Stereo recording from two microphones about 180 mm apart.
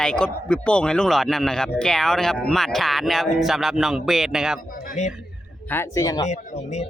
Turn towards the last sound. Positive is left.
turn(degrees=20)  # may be behind; listen again after turning